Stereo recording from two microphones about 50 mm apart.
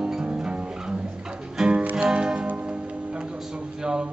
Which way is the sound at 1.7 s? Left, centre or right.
Right.